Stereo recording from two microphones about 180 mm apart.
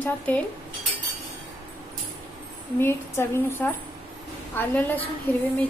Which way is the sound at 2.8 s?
15° left (ahead or behind).